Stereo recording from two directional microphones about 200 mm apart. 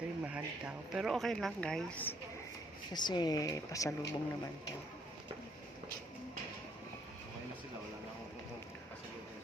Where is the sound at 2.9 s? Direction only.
20° left (ahead or behind).